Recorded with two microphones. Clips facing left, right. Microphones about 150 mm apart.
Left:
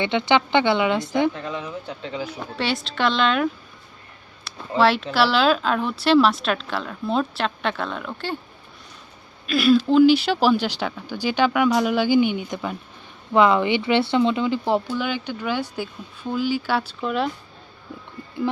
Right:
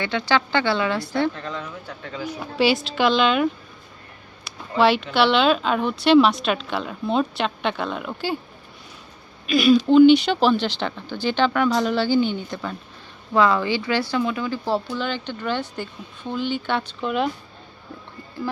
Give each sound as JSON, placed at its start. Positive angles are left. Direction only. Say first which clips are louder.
{"t": 0.0, "sound": "speech", "louder": "left 2 dB", "side_deg": 20}
{"t": 2.6, "sound": "a woman's voice", "louder": "right 5 dB", "side_deg": -5}
{"t": 4.5, "sound": "a sound", "louder": "left 1 dB", "side_deg": 0}
{"t": 4.8, "sound": "a woman's voice", "louder": "right 1 dB", "side_deg": 0}
{"t": 9.5, "sound": "a woman's voice", "louder": "right 1 dB", "side_deg": 0}